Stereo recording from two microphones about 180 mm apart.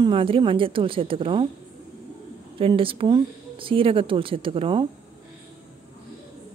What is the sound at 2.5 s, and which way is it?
Speech, 30° right (ahead or behind).